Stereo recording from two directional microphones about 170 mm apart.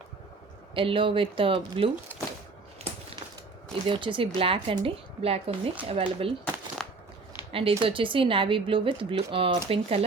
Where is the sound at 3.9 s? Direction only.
30° right (ahead or behind).